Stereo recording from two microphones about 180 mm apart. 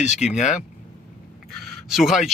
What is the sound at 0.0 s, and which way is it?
Speech, 40° left (ahead or behind).